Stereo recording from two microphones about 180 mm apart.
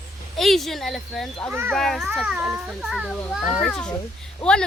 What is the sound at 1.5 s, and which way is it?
Speech, 10° right (ahead or behind).